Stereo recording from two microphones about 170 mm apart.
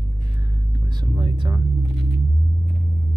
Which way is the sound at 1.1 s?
30° right (ahead or behind).